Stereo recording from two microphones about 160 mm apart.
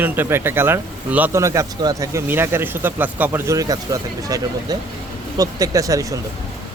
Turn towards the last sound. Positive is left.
turn(degrees=-20)  # may be behind; listen again after turning